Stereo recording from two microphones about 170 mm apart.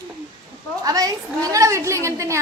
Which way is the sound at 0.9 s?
20° right (ahead or behind).